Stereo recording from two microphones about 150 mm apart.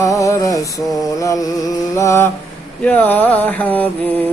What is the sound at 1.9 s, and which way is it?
Music, 20° left (ahead or behind).